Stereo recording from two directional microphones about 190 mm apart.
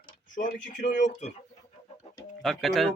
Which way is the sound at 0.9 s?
40° left (ahead or behind).